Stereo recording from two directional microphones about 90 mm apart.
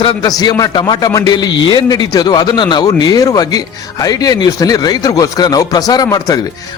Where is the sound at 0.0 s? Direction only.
55° left (ahead or behind).